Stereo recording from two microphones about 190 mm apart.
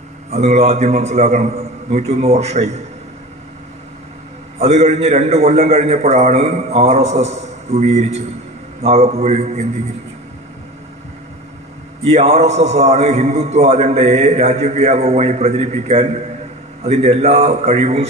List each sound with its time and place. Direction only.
0.3 s a man's voice: 35° right (ahead or behind)
4.6 s a man's voice: 35° right (ahead or behind)
12.0 s a man's voice: 35° right (ahead or behind)